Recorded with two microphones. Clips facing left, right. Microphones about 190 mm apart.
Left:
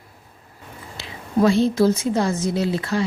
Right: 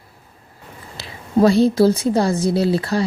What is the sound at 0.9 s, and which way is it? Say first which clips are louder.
A woman's voice: right 3 dB; 35° right (ahead or behind).